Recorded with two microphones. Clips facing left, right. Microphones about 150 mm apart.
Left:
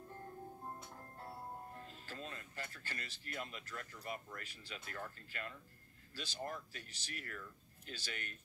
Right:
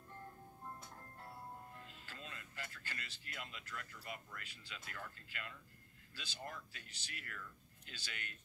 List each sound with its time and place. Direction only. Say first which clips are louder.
0.7 s speech: left 2 dB; 30° left (ahead or behind)